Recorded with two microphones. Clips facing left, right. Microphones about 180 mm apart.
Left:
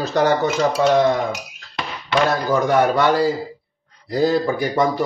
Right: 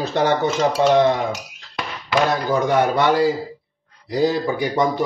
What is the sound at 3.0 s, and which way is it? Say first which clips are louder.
Speech: even; 20° right (ahead or behind).